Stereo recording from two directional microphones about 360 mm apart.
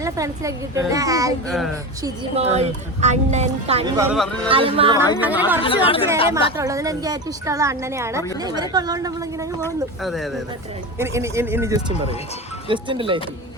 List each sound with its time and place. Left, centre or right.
0.0 s speech: centre
2.0 s speech: centre
5.6 s speech: centre
6.6 s speech: centre
9.6 s speech: centre